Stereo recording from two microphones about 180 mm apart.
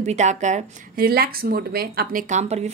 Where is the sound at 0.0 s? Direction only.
40° right (ahead or behind).